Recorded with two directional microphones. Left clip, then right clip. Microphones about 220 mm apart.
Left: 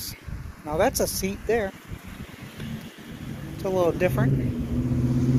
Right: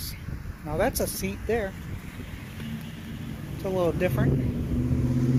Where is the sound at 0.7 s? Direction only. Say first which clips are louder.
Left 4 dB; 15° left (ahead or behind).